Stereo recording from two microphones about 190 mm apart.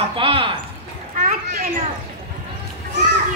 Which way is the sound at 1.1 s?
45° right (ahead or behind).